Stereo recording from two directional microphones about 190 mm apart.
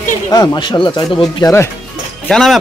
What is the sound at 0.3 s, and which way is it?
Speech, 20° left (ahead or behind).